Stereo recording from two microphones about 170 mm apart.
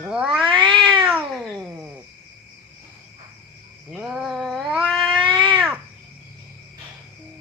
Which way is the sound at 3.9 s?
5° right (ahead or behind).